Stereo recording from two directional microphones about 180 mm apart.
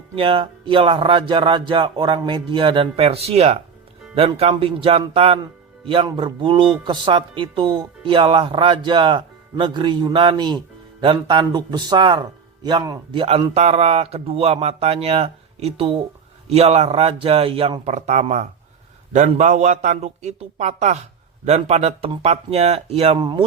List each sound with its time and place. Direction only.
0.2 s speech: 30° right (ahead or behind)
13.2 s speech: 35° right (ahead or behind)